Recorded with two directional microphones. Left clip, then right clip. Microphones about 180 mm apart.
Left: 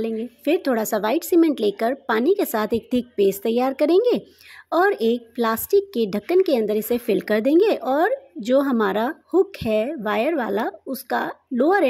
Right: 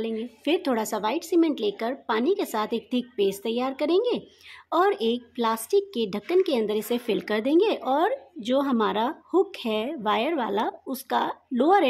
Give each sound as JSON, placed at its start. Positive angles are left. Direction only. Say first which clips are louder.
{"t": 0.0, "sound": "a woman's voice", "louder": "left 4 dB", "side_deg": 15}